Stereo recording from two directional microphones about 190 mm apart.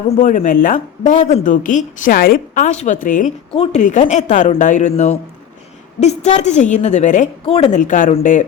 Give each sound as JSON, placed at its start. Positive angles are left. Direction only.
{"t": 0.2, "sound": "speech", "side_deg": 45}
{"t": 3.5, "sound": "a woman's voice", "side_deg": 30}